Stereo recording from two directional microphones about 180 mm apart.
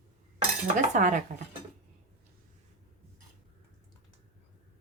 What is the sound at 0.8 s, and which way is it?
Speech, 45° right (ahead or behind).